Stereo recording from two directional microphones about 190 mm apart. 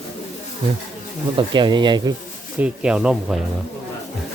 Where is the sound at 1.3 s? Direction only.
25° right (ahead or behind).